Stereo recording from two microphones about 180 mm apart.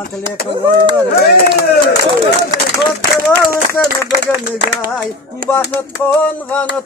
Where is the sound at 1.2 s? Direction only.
60° left (ahead or behind).